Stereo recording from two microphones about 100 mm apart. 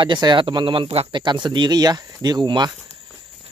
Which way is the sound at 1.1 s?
50° right (ahead or behind).